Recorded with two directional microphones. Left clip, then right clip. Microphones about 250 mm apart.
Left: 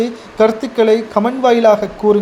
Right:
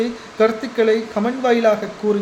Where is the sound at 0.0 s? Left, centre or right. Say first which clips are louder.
Left 4 dB; left.